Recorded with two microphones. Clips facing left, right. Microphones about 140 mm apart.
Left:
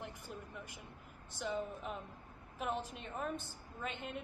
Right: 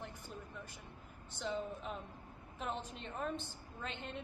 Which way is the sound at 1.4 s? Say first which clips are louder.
Left 1 dB; 10° left (ahead or behind).